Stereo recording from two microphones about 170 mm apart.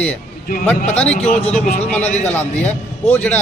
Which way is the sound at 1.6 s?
45° left (ahead or behind).